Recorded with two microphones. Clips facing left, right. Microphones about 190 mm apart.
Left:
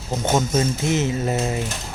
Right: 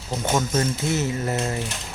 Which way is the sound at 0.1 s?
20° left (ahead or behind).